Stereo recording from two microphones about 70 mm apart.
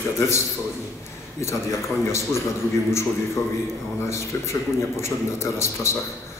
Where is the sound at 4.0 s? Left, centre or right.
Left.